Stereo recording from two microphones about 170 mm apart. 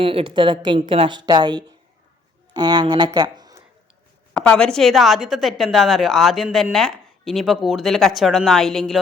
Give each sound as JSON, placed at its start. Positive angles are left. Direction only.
{"t": 0.0, "sound": "a woman's voice", "side_deg": -30}
{"t": 4.4, "sound": "a woman's voice", "side_deg": 5}